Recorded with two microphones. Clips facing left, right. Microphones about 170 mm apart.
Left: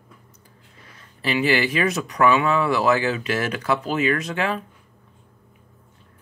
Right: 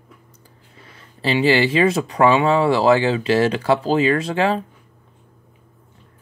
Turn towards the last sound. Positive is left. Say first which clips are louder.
# right 6 dB
turn(degrees=-30)  # may be behind; listen again after turning